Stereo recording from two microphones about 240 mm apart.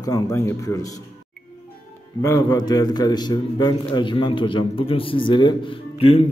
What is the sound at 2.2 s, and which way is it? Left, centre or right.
A man's voice, centre.